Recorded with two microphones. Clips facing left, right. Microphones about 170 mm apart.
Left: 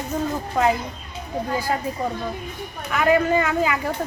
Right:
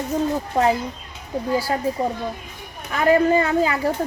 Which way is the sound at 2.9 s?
35° right (ahead or behind).